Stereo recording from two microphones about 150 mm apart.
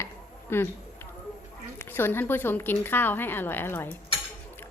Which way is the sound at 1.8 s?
15° left (ahead or behind).